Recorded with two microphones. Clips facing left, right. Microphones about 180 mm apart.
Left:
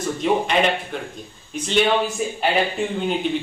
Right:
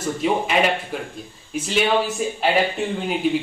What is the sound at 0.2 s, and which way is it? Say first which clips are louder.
A man's voice: left 1 dB; 5° right (ahead or behind).